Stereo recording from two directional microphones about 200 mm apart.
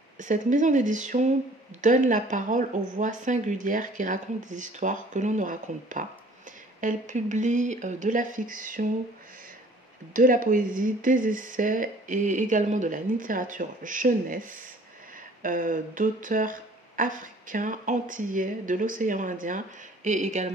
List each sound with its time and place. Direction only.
0.2 s speech: 40° right (ahead or behind)
10.1 s speech: 40° right (ahead or behind)